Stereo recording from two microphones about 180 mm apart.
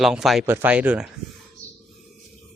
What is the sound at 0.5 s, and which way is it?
Speech, 10° right (ahead or behind).